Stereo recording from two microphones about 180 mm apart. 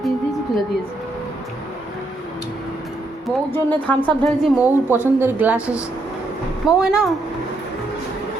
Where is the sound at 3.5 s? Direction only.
10° left (ahead or behind).